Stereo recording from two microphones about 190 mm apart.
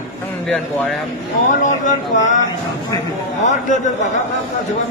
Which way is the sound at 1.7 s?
40° left (ahead or behind).